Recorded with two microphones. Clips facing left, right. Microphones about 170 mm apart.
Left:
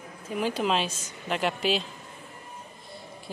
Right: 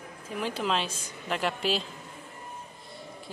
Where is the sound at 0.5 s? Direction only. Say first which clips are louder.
Left 3 dB; 10° left (ahead or behind).